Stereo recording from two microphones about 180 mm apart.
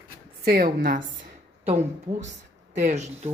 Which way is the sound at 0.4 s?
55° right (ahead or behind).